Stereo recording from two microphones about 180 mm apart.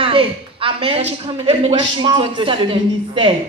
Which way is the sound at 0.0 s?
30° right (ahead or behind).